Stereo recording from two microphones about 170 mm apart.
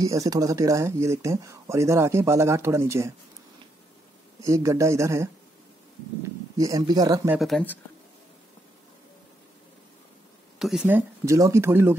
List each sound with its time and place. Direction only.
0.0 s speech: 20° right (ahead or behind)
4.5 s speech: 20° right (ahead or behind)
6.5 s speech: 20° right (ahead or behind)
7.3 s speech: centre (ahead or behind)
10.6 s speech: 5° right (ahead or behind)